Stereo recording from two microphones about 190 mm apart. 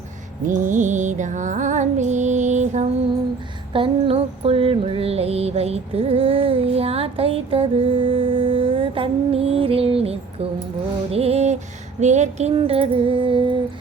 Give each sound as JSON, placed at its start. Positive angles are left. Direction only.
{"t": 0.4, "sound": "music", "side_deg": -40}
{"t": 3.7, "sound": "music", "side_deg": -25}
{"t": 11.1, "sound": "female singing", "side_deg": -30}